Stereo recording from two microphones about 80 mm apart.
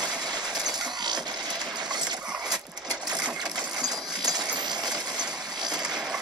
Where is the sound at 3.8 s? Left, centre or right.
Right.